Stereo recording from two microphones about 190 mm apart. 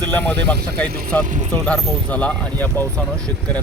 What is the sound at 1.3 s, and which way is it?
Speech, 40° right (ahead or behind).